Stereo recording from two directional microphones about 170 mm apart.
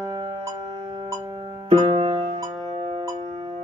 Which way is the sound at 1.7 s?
30° right (ahead or behind).